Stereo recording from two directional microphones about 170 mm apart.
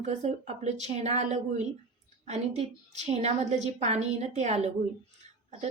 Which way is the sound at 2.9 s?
40° right (ahead or behind).